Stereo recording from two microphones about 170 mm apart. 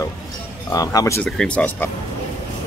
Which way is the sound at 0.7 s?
20° left (ahead or behind).